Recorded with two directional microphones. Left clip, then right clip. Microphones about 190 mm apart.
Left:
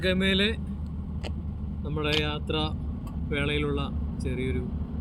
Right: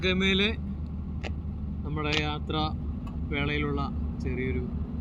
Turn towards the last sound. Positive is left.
turn(degrees=0)  # may be behind; listen again after turning